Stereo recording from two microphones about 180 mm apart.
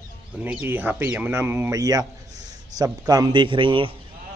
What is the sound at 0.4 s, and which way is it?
Speech, 10° right (ahead or behind).